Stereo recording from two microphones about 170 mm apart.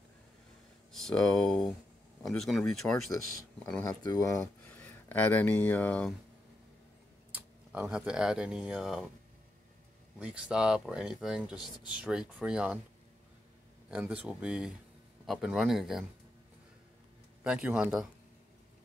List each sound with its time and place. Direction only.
0.9 s speech: 5° left (ahead or behind)
4.0 s speech: 20° left (ahead or behind)
4.4 s speech: 10° left (ahead or behind)
7.3 s speech: 10° right (ahead or behind)
10.1 s speech: 5° right (ahead or behind)
13.8 s speech: 10° right (ahead or behind)
17.4 s speech: 5° right (ahead or behind)